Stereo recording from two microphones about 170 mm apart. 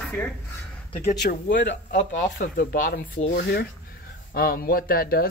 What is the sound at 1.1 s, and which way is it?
Speech, 90° left.